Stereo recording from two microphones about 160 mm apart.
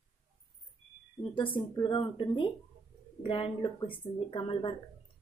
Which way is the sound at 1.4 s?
30° left (ahead or behind).